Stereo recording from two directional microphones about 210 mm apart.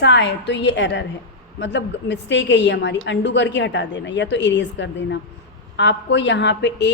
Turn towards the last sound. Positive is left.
turn(degrees=55)  # may be behind; listen again after turning